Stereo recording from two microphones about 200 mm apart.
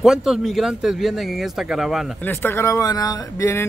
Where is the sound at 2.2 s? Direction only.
10° left (ahead or behind).